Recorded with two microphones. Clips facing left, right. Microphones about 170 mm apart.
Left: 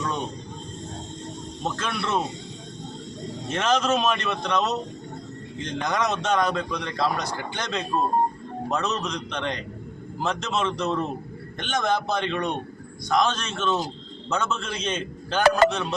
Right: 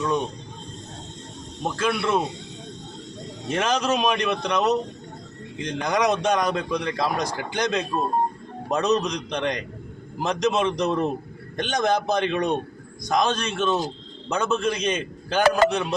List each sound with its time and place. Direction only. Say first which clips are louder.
1.6 s a man's voice: right 5 dB; 10° right (ahead or behind)
3.5 s a man's voice: even; 15° right (ahead or behind)